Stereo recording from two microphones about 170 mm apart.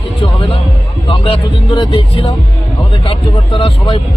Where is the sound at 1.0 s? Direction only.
30° left (ahead or behind).